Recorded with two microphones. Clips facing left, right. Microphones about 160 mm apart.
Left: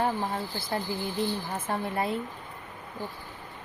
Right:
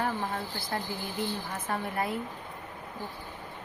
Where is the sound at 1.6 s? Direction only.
25° left (ahead or behind).